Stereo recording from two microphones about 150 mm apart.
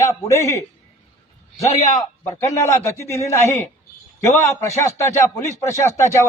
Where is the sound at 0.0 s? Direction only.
20° left (ahead or behind).